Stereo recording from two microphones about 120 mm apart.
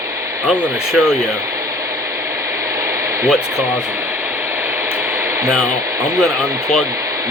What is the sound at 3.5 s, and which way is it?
Speech, 20° right (ahead or behind).